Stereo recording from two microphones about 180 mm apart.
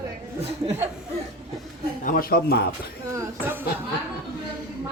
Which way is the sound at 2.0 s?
50° left (ahead or behind).